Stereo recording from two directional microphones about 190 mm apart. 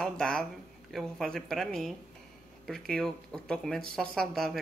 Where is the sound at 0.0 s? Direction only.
5° left (ahead or behind).